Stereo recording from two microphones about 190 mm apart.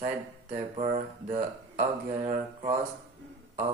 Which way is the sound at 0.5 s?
35° right (ahead or behind).